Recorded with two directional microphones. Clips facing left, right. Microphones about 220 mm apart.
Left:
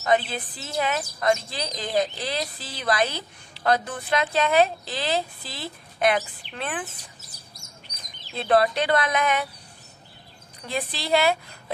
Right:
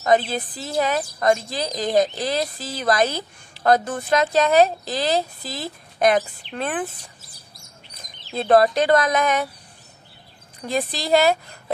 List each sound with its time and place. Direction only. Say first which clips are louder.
0.0 s a woman's voice: right 4 dB; 40° right (ahead or behind)
8.4 s speech: right 5 dB; 45° right (ahead or behind)
10.7 s speech: right 4 dB; 40° right (ahead or behind)